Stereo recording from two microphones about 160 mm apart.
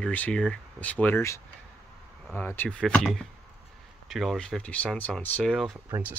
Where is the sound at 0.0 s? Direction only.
10° left (ahead or behind).